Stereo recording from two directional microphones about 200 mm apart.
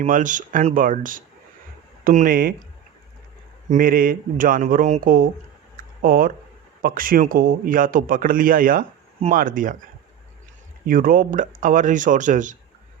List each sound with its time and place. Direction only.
0.0 s a man's voice: 40° right (ahead or behind)
3.7 s a man's voice: 45° right (ahead or behind)
5.7 s a sound: 45° right (ahead or behind)
6.8 s a man's voice: 45° right (ahead or behind)
10.8 s speech: 45° right (ahead or behind)